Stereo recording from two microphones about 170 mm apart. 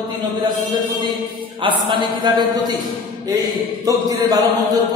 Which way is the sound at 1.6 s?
30° right (ahead or behind).